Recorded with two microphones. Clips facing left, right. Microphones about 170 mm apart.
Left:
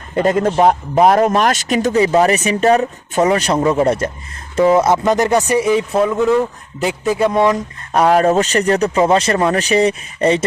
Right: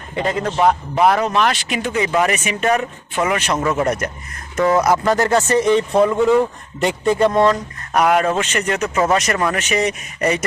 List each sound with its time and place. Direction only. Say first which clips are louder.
0.2 s a man's voice: left 5 dB; 45° left (ahead or behind); by 7.6 s 10° left (ahead or behind)
7.9 s a man's voice: left 4 dB; 30° left (ahead or behind)